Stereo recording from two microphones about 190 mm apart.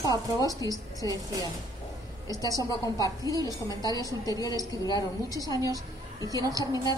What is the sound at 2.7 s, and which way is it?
A woman's voice, 20° left (ahead or behind).